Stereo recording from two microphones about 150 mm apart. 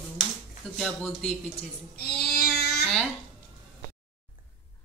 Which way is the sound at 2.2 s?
90° left.